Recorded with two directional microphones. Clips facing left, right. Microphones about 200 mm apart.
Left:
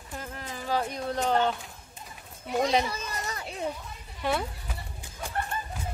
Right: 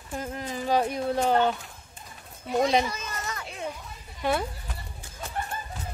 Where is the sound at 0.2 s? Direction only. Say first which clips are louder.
Right 7 dB; 20° right (ahead or behind).